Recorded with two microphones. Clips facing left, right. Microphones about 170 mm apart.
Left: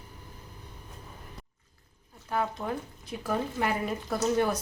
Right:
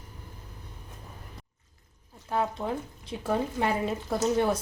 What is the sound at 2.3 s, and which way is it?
Speech, 20° right (ahead or behind).